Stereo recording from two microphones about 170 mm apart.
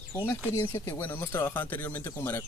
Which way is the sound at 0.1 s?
15° left (ahead or behind).